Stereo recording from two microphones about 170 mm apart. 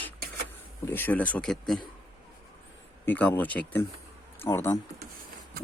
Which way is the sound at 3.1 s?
10° left (ahead or behind).